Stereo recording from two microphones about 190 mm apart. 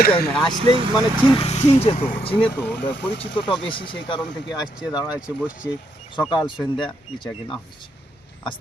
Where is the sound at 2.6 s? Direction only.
60° left (ahead or behind).